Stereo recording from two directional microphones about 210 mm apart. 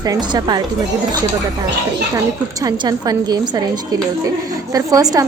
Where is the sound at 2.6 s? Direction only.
20° right (ahead or behind).